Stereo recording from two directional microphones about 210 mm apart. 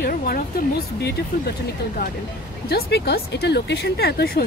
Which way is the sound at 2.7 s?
50° left (ahead or behind).